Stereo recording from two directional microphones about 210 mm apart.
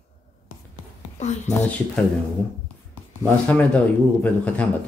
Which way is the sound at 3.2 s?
5° left (ahead or behind).